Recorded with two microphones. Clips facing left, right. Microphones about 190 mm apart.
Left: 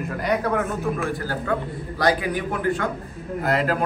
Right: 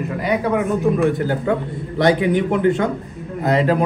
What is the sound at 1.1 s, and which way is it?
A man's voice, 20° right (ahead or behind).